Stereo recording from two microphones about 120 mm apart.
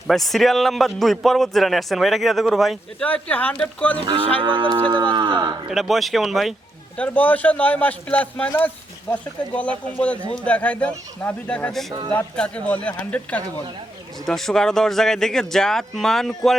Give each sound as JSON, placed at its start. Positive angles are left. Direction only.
{"t": 0.1, "sound": "a man's voice", "side_deg": 0}
{"t": 3.0, "sound": "a man's voice", "side_deg": 10}
{"t": 4.0, "sound": "cattle", "side_deg": -45}
{"t": 4.4, "sound": "speech", "side_deg": -45}
{"t": 5.6, "sound": "a man's voice", "side_deg": 0}
{"t": 6.9, "sound": "a man's voice", "side_deg": 10}